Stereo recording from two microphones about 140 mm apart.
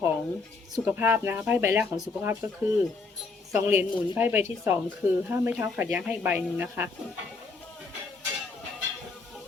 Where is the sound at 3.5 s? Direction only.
15° right (ahead or behind).